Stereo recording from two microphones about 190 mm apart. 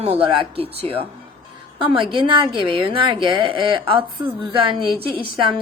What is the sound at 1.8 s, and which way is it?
A woman's voice, 25° right (ahead or behind).